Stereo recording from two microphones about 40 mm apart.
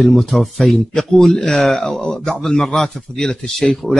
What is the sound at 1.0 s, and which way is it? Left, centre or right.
Speech, centre.